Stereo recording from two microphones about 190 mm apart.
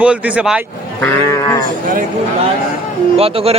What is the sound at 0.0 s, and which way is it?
Speech, 5° right (ahead or behind).